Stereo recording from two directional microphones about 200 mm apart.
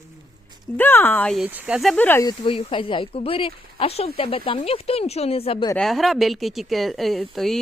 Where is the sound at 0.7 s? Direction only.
10° left (ahead or behind).